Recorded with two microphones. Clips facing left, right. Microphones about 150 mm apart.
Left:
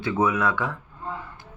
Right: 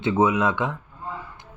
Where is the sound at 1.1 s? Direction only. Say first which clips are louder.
Even; 10° right (ahead or behind).